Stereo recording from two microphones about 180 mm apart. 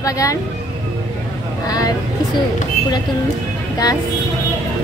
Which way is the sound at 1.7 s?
20° left (ahead or behind).